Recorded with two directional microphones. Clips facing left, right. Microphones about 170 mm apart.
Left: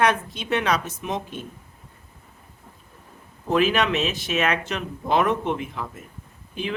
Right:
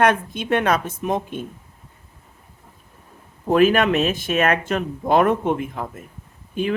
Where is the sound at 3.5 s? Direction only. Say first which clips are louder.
Right 5 dB; 50° right (ahead or behind).